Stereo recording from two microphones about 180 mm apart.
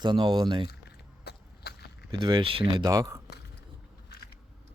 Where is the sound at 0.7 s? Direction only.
65° left (ahead or behind).